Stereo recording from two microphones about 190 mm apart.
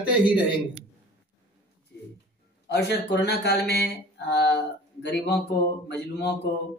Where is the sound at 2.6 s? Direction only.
60° left (ahead or behind).